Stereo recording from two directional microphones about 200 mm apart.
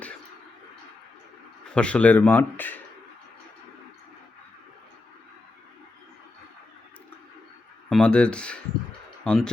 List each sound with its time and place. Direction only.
1.7 s speech: 5° left (ahead or behind)
7.9 s speech: 5° left (ahead or behind)